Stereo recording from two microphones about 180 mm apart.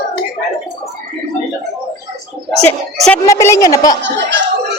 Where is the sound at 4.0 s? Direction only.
85° right.